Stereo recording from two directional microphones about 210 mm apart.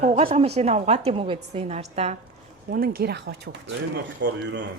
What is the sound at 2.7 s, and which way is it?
Speech, 45° right (ahead or behind).